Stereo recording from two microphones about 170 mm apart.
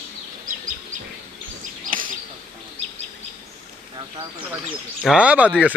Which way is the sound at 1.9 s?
55° right (ahead or behind).